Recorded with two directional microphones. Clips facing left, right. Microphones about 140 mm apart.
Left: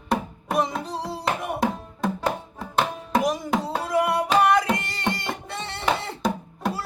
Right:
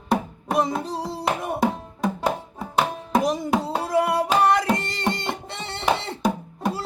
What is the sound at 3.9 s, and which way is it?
Music, 30° right (ahead or behind).